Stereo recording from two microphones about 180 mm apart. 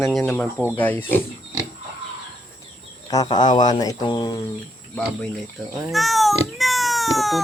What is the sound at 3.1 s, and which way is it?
Speech, 20° left (ahead or behind).